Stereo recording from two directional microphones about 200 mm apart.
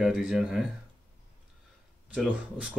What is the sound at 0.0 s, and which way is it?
Speech, 5° right (ahead or behind).